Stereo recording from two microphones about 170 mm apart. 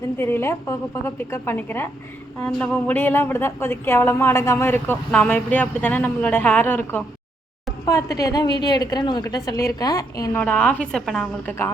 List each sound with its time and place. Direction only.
0.2 s a woman's voice: 15° left (ahead or behind)
10.4 s a woman's voice: 5° left (ahead or behind)